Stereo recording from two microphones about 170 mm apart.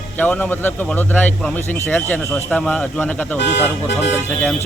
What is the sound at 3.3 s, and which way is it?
Speech, 90° left.